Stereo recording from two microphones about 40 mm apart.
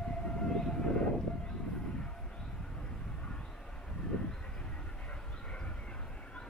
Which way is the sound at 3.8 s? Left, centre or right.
Left.